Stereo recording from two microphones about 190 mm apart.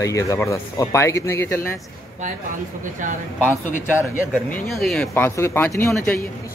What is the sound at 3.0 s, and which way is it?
Speech, 40° right (ahead or behind).